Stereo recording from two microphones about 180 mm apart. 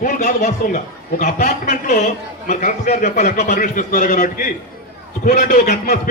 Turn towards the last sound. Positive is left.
turn(degrees=50)  # may be behind; listen again after turning